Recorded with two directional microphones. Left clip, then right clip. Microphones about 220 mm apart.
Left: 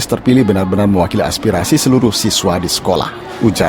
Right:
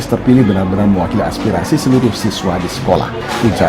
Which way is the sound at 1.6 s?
45° left (ahead or behind).